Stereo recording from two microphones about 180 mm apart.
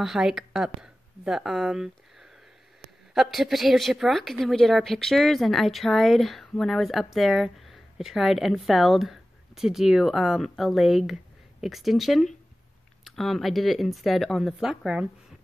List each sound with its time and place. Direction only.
0.0 s a woman's voice: centre (ahead or behind)